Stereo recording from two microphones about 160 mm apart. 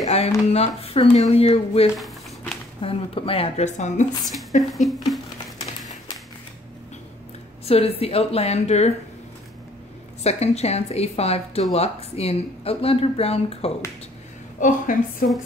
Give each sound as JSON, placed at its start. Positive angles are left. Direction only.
{"t": 0.0, "sound": "a sound", "side_deg": 40}
{"t": 0.5, "sound": "speech", "side_deg": 40}
{"t": 4.2, "sound": "a woman's voice", "side_deg": 0}
{"t": 7.6, "sound": "speech", "side_deg": 40}
{"t": 10.2, "sound": "speech", "side_deg": 40}
{"t": 14.6, "sound": "a woman's voice", "side_deg": 55}